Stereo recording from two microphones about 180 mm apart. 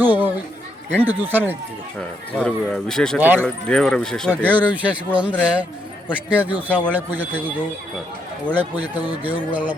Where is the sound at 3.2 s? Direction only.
10° right (ahead or behind).